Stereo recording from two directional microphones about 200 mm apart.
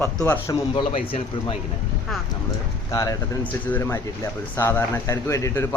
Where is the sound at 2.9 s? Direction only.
15° left (ahead or behind).